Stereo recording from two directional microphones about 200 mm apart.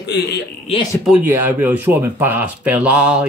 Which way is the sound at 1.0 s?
5° right (ahead or behind).